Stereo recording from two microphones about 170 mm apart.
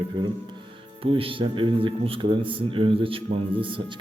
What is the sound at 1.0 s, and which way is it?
A man's voice, 30° right (ahead or behind).